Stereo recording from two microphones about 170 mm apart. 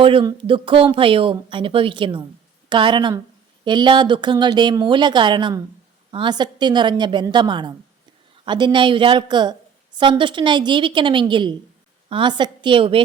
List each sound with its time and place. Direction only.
0.0 s a woman's voice: 30° right (ahead or behind)